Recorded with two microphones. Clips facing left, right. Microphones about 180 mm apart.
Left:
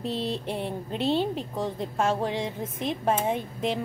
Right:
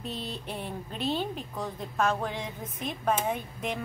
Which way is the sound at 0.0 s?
30° left (ahead or behind).